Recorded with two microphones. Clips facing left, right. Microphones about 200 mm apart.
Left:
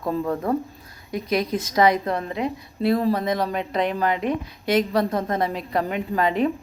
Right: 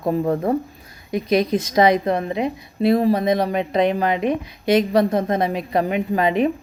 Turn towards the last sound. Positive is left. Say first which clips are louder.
# right 3 dB
turn(degrees=-15)  # may be behind; listen again after turning